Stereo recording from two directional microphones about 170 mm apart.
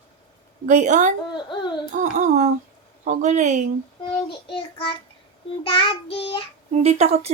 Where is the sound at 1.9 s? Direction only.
45° right (ahead or behind).